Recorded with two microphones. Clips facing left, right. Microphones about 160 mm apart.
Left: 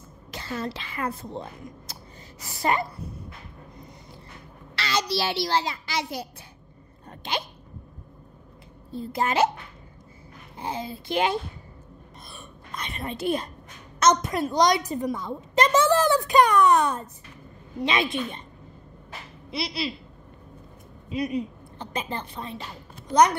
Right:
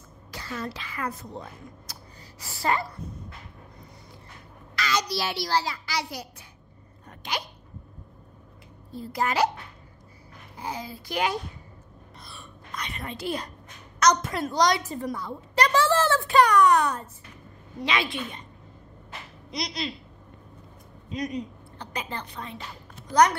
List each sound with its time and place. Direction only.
0.3 s a woman's voice: 25° left (ahead or behind)
4.7 s a child's voice: 30° left (ahead or behind)
7.1 s hiccup: 25° left (ahead or behind)
8.9 s a woman's voice: 25° left (ahead or behind)
10.6 s a woman's voice: 25° left (ahead or behind)
12.3 s a sound: 25° left (ahead or behind)
13.9 s a woman's voice: 20° left (ahead or behind)
19.5 s speech: 5° left (ahead or behind)
21.1 s speech: 10° left (ahead or behind)
21.7 s a woman's voice: 20° left (ahead or behind)